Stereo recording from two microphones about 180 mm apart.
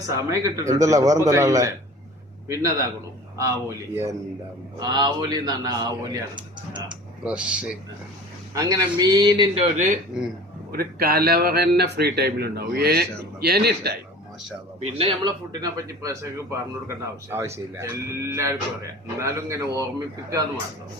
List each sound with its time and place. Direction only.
0.1 s a man's voice: 20° right (ahead or behind)
7.3 s a man's voice: 5° right (ahead or behind)
8.5 s speech: 20° right (ahead or behind)
9.7 s speech: 40° right (ahead or behind)
10.7 s a man's voice: 55° right (ahead or behind)
14.8 s speech: 35° right (ahead or behind)
15.6 s a man's voice: 15° right (ahead or behind)